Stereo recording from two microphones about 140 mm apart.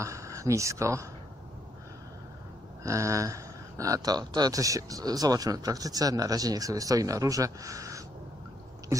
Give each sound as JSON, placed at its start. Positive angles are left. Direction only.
{"t": 0.0, "sound": "speech", "side_deg": -20}
{"t": 2.8, "sound": "speech", "side_deg": -20}